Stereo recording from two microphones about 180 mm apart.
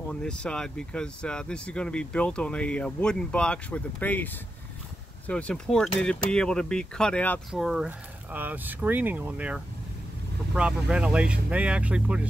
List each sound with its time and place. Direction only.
0.1 s speech: 5° left (ahead or behind)